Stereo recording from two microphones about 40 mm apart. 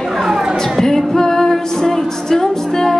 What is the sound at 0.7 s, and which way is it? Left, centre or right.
Music, centre.